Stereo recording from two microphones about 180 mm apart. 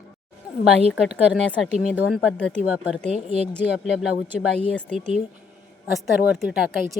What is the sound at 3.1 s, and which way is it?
Speech, 40° right (ahead or behind).